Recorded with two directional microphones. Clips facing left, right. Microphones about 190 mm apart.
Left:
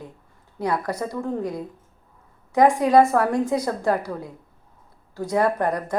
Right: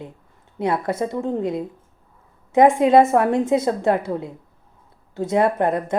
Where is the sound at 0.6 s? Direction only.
25° right (ahead or behind).